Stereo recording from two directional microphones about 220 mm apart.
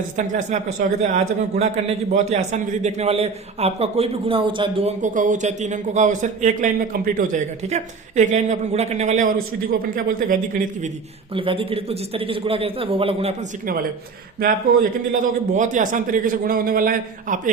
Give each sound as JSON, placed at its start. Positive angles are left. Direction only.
{"t": 0.2, "sound": "a man's voice", "side_deg": -35}
{"t": 11.3, "sound": "a man's voice", "side_deg": -25}
{"t": 14.3, "sound": "a man's voice", "side_deg": -40}